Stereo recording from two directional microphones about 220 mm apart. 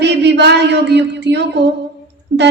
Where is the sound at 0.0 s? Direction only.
50° right (ahead or behind).